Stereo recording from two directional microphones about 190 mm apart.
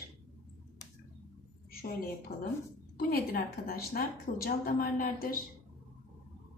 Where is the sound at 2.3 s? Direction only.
55° left (ahead or behind).